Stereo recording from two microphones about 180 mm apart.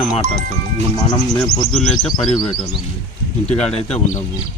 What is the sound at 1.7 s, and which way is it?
Speech, 5° left (ahead or behind).